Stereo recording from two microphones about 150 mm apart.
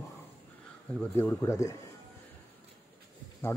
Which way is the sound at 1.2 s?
15° left (ahead or behind).